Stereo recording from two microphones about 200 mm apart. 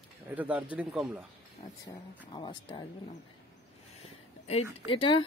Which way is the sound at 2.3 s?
25° left (ahead or behind).